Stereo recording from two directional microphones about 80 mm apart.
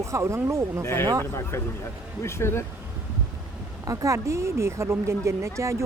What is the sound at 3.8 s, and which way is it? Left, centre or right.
A woman's voice, right.